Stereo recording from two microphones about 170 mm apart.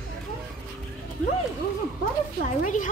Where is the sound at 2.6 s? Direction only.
50° left (ahead or behind).